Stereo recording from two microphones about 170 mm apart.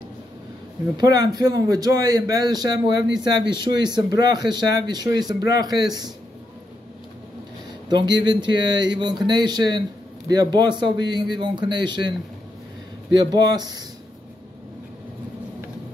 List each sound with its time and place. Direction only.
0.9 s speech: 25° right (ahead or behind)
7.9 s speech: 25° right (ahead or behind)